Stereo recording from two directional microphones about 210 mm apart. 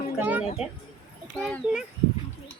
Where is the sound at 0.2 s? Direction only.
5° right (ahead or behind).